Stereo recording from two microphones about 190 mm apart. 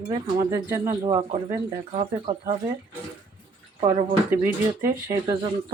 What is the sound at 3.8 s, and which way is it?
Speech, 35° right (ahead or behind).